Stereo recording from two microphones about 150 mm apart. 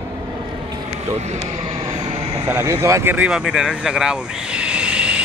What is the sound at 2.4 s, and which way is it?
Speech, 15° right (ahead or behind).